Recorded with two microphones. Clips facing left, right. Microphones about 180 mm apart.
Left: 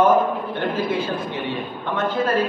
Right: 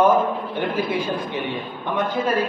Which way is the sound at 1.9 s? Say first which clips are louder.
Left 1 dB; 10° right (ahead or behind).